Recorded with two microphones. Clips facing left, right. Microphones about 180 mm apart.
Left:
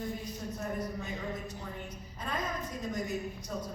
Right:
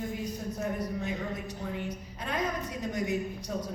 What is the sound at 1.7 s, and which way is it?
A woman's voice, 75° right (ahead or behind).